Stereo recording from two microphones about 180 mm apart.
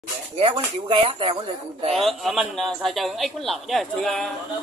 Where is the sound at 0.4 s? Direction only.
30° right (ahead or behind).